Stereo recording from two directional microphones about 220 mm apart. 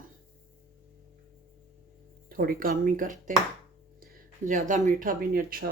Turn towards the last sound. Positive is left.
turn(degrees=-40)  # may be behind; listen again after turning